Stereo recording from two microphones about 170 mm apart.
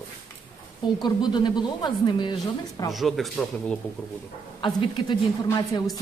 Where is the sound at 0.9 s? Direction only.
25° left (ahead or behind).